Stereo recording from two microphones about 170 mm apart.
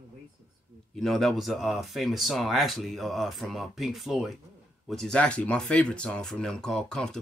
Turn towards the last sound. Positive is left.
turn(degrees=5)  # may be behind; listen again after turning